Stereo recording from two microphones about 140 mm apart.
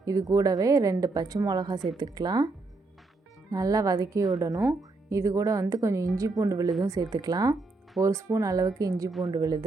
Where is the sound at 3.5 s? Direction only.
25° right (ahead or behind).